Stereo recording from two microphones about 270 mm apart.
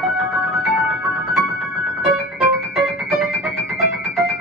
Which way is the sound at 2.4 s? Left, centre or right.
Centre.